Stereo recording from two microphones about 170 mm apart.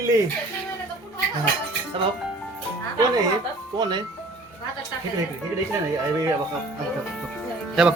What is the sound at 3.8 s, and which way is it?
Speech, 25° right (ahead or behind).